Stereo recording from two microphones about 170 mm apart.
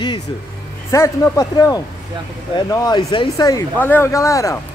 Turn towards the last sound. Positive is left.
turn(degrees=20)  # may be behind; listen again after turning